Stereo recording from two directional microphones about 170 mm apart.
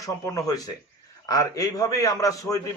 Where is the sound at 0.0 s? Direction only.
20° left (ahead or behind).